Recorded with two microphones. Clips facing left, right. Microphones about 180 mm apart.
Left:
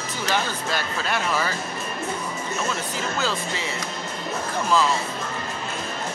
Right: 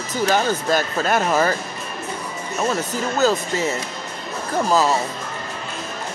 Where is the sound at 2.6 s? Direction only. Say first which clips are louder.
Right 5 dB; 40° right (ahead or behind).